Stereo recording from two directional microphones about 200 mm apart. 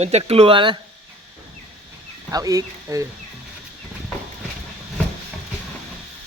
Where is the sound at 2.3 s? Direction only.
15° right (ahead or behind).